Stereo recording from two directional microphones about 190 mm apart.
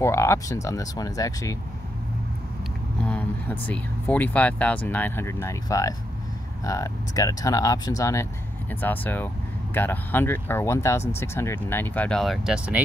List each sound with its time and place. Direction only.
0.0 s speech: 15° left (ahead or behind)
3.1 s speech: 10° left (ahead or behind)